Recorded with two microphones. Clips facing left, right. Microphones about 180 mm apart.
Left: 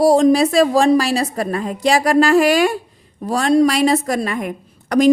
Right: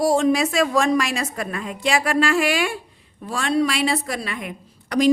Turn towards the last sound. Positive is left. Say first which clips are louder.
# left 5 dB
turn(degrees=45)  # may be behind; listen again after turning